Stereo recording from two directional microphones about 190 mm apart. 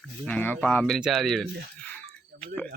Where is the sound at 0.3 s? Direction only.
10° left (ahead or behind).